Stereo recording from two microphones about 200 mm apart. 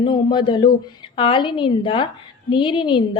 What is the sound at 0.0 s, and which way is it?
Speech, 25° left (ahead or behind).